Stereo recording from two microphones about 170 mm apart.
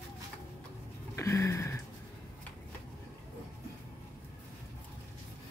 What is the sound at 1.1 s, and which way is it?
Music, 15° left (ahead or behind).